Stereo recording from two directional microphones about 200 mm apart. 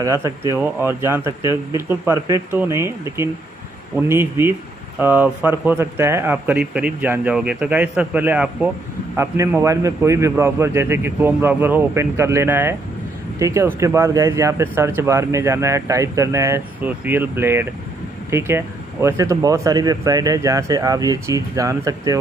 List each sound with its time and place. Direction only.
0.0 s speech: 15° right (ahead or behind)